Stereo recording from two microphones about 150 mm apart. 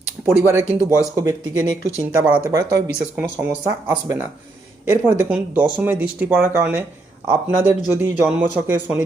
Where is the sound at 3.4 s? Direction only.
10° right (ahead or behind).